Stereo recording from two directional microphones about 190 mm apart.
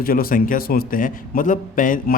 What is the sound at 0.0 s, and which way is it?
A man's voice, 50° left (ahead or behind).